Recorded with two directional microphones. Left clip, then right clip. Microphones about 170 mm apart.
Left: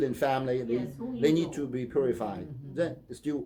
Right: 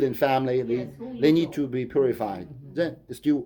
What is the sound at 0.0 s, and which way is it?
A man's voice, 35° right (ahead or behind).